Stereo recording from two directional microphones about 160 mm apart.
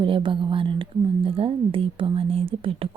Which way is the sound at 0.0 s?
30° right (ahead or behind).